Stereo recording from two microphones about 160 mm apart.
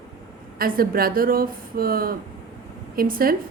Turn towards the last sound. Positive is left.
turn(degrees=-65)  # may be behind; listen again after turning